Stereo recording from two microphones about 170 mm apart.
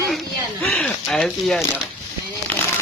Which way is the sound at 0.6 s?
10° left (ahead or behind).